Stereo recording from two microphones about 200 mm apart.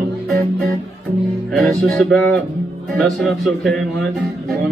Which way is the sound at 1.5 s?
Centre (ahead or behind).